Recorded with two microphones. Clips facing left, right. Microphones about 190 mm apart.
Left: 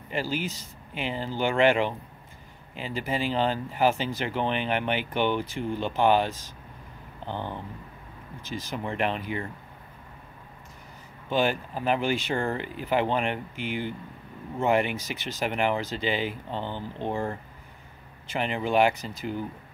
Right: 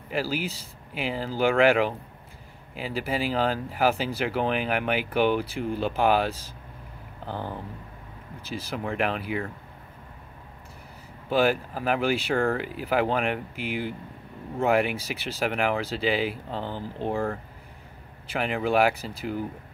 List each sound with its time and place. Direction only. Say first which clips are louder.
0.1 s speech: right 1 dB; 5° right (ahead or behind)
8.4 s speech: right 1 dB; 35° right (ahead or behind)
8.7 s speech: right 1 dB; centre (ahead or behind)
11.2 s speech: right 3 dB; 5° right (ahead or behind)
18.4 s speech: even; 5° right (ahead or behind)